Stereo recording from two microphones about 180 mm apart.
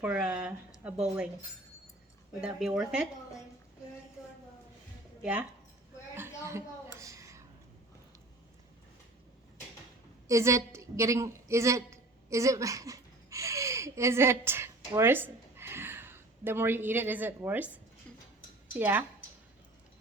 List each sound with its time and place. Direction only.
0.0 s speech: 5° right (ahead or behind)
2.4 s speech: 5° right (ahead or behind)
5.2 s speech: 10° right (ahead or behind)
6.1 s a sound: 15° right (ahead or behind)
10.2 s a woman's voice: 15° right (ahead or behind)
18.7 s speech: 10° right (ahead or behind)